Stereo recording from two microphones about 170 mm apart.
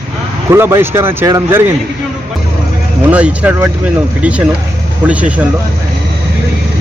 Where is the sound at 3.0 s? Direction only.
5° right (ahead or behind).